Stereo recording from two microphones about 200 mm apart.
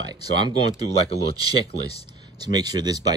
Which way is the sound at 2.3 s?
20° right (ahead or behind).